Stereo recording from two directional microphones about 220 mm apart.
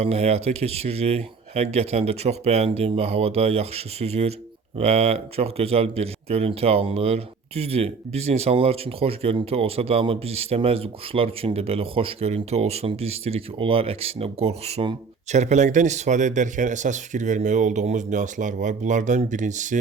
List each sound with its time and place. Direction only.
0.0 s speech: 30° right (ahead or behind)